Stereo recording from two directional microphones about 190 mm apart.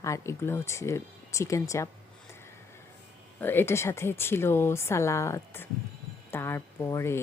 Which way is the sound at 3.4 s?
10° left (ahead or behind).